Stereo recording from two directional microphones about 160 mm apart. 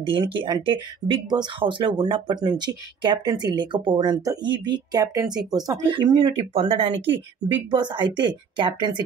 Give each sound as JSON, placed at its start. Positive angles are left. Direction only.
{"t": 0.0, "sound": "speech", "side_deg": -30}